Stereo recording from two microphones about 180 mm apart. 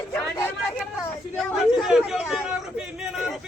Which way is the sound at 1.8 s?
5° right (ahead or behind).